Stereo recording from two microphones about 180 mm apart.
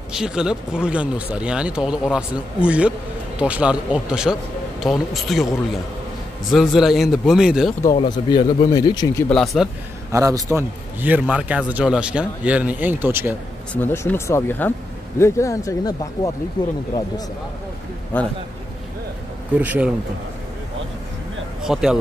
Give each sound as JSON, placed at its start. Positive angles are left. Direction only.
{"t": 0.1, "sound": "speech", "side_deg": -5}
{"t": 7.8, "sound": "speech", "side_deg": 25}
{"t": 9.3, "sound": "speech", "side_deg": 0}
{"t": 10.1, "sound": "a man's voice", "side_deg": -20}
{"t": 13.7, "sound": "speech", "side_deg": 10}
{"t": 18.1, "sound": "speech", "side_deg": 10}
{"t": 19.6, "sound": "a man's voice", "side_deg": -10}
{"t": 21.7, "sound": "speech", "side_deg": -5}